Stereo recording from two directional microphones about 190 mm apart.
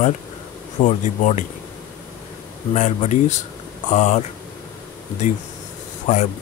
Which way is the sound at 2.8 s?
40° left (ahead or behind).